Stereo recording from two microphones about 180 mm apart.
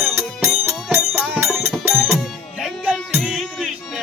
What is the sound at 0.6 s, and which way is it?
Music, 10° right (ahead or behind).